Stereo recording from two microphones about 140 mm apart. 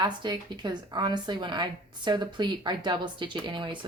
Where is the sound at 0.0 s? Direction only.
30° right (ahead or behind).